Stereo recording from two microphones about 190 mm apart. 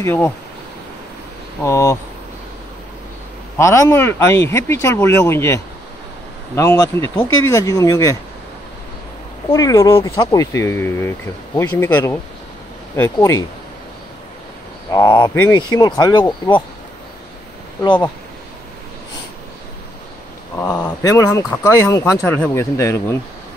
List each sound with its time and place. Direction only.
0.0 s speech: 15° left (ahead or behind)
1.6 s speech: 15° left (ahead or behind)
3.5 s speech: 15° left (ahead or behind)
9.5 s speech: 15° left (ahead or behind)
14.9 s speech: 20° left (ahead or behind)
15.7 s speech: 20° left (ahead or behind)
20.5 s speech: 10° left (ahead or behind)